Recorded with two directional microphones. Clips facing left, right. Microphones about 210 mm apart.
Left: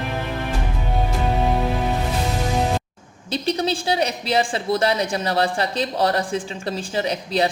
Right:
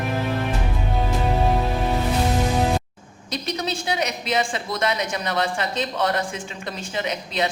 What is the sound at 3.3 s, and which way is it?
Speech, 30° left (ahead or behind).